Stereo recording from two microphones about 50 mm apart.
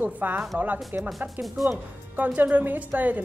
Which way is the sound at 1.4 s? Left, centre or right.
Centre.